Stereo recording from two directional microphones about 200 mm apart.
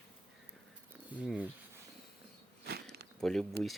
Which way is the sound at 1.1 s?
5° right (ahead or behind).